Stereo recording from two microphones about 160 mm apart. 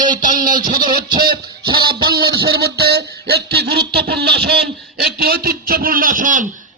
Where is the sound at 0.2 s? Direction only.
55° right (ahead or behind).